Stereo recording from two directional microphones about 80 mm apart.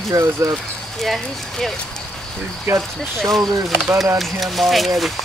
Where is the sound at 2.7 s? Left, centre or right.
Right.